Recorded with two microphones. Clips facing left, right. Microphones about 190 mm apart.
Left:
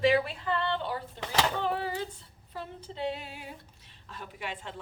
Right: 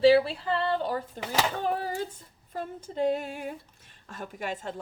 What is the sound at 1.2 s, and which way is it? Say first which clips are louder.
Speech: left 1 dB; 10° right (ahead or behind).